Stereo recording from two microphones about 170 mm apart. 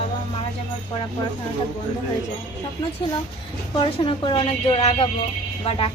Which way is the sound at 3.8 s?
30° left (ahead or behind).